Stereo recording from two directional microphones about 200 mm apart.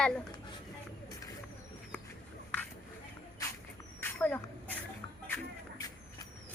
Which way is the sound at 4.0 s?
10° left (ahead or behind).